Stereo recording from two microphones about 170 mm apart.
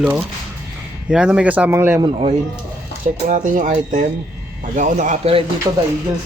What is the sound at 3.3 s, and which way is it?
Speech, 45° right (ahead or behind).